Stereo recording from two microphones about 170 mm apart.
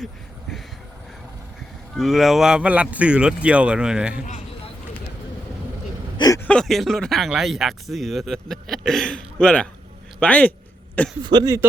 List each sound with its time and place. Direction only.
0.0 s vehicle: centre (ahead or behind)
2.0 s speech: centre (ahead or behind)
6.1 s speech: 20° left (ahead or behind)
6.4 s a man's voice: 5° left (ahead or behind)
11.2 s speech: 25° right (ahead or behind)